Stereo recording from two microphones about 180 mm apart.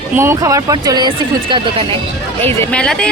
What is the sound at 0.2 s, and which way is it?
Speech, 15° right (ahead or behind).